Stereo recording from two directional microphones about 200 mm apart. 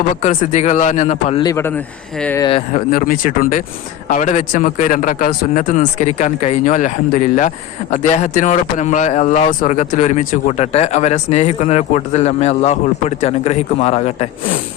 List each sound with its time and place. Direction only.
0.2 s speech: 35° left (ahead or behind)
1.4 s speech: 15° left (ahead or behind)
2.4 s speech: 25° left (ahead or behind)
2.7 s speech: 40° left (ahead or behind)